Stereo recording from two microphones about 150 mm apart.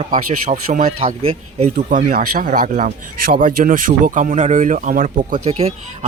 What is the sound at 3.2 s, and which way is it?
Speech, 75° right (ahead or behind).